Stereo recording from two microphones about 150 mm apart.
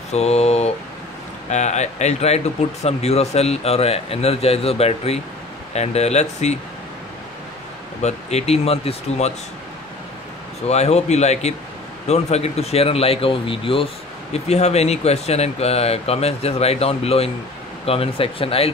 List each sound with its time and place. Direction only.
0.1 s speech: 45° left (ahead or behind)
8.0 s speech: 45° left (ahead or behind)
10.7 s speech: 45° left (ahead or behind)